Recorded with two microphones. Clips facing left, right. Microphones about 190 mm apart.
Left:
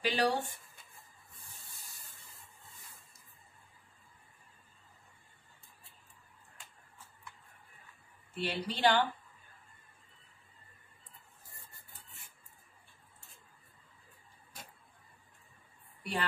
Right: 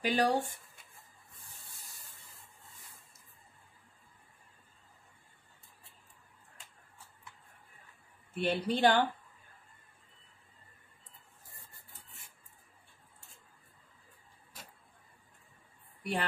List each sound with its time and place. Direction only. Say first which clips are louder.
0.0 s speech: right 1 dB; 45° right (ahead or behind)
8.4 s speech: right 4 dB; 50° right (ahead or behind)
16.0 s a woman's voice: right 2 dB; 50° right (ahead or behind)